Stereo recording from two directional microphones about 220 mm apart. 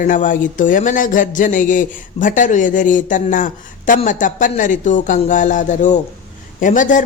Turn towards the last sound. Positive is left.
turn(degrees=35)  # may be behind; listen again after turning